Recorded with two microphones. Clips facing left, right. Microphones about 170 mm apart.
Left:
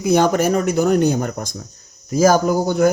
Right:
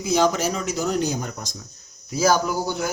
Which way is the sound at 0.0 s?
55° left (ahead or behind).